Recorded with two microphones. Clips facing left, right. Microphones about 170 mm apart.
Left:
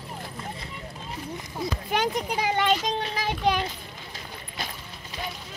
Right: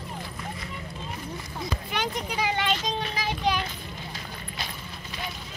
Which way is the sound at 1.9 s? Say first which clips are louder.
Left 4 dB; 45° left (ahead or behind).